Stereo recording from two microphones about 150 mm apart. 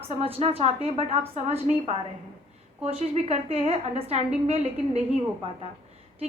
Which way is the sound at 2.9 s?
45° right (ahead or behind).